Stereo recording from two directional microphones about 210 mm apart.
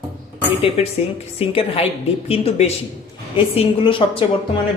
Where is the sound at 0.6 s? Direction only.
30° left (ahead or behind).